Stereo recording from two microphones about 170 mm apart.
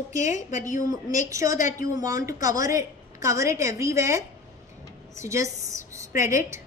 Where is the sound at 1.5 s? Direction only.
50° left (ahead or behind).